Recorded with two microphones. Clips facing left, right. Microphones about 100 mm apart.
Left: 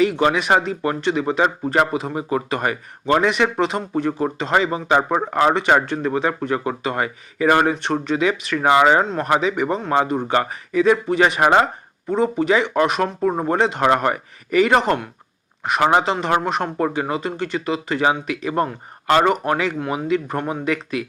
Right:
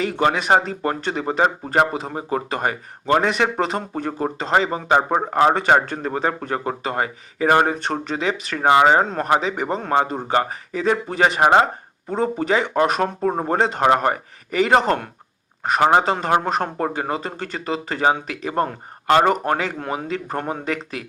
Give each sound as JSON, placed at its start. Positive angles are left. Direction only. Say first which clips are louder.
{"t": 0.0, "sound": "speech", "louder": "left 3 dB", "side_deg": -35}